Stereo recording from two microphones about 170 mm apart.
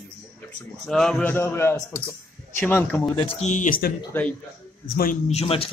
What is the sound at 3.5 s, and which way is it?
Speech, 50° left (ahead or behind).